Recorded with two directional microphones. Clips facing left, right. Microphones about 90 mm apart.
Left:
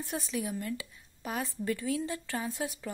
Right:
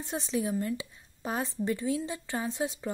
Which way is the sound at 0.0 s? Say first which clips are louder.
Right 3 dB; 25° right (ahead or behind).